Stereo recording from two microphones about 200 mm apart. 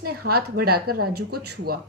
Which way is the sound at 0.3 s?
50° right (ahead or behind).